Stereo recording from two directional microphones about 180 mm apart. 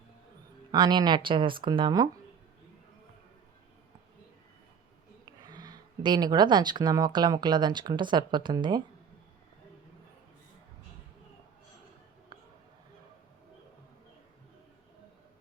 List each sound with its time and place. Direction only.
0.7 s speech: 25° right (ahead or behind)
5.2 s speech: 20° right (ahead or behind)
12.3 s a sound: 25° right (ahead or behind)